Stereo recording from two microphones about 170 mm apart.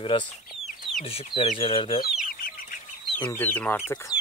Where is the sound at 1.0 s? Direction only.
35° left (ahead or behind).